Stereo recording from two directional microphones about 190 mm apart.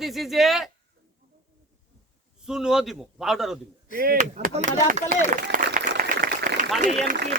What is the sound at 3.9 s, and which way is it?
Speech, 50° right (ahead or behind).